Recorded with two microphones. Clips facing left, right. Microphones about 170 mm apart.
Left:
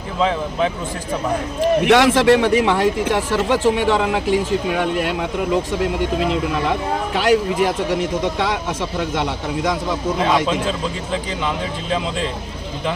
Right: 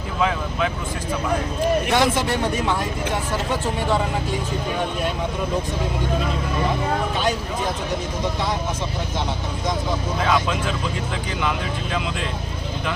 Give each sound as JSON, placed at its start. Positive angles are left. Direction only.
{"t": 0.2, "sound": "speech", "side_deg": 25}
{"t": 1.8, "sound": "speech", "side_deg": 75}
{"t": 7.1, "sound": "speech", "side_deg": 85}
{"t": 10.2, "sound": "speech", "side_deg": 25}